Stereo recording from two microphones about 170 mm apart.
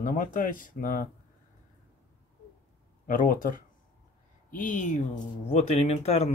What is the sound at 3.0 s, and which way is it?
Speech, 50° left (ahead or behind).